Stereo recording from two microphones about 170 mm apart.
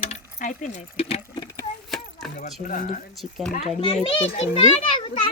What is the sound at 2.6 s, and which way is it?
Speech, 50° left (ahead or behind).